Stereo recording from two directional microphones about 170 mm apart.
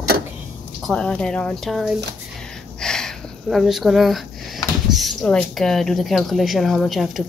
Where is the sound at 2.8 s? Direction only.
5° left (ahead or behind).